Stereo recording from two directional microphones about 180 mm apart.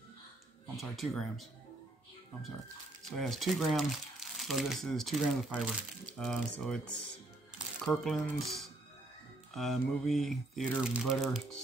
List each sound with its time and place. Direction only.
0.7 s speech: centre (ahead or behind)
3.1 s speech: centre (ahead or behind)
7.8 s speech: 5° left (ahead or behind)